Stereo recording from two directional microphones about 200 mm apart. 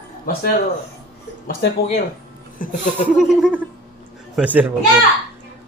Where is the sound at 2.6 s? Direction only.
40° left (ahead or behind).